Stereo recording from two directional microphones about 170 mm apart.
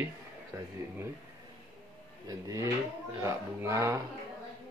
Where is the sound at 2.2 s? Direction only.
20° right (ahead or behind).